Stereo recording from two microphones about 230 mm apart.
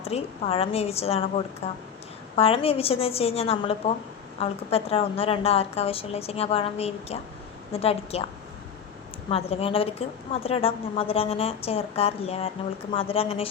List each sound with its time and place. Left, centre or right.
0.1 s a woman's voice: left
9.3 s a woman's voice: left